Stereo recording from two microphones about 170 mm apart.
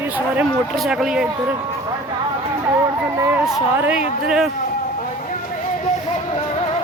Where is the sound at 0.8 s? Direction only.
5° right (ahead or behind).